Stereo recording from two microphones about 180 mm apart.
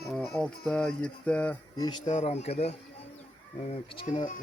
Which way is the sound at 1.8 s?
25° left (ahead or behind).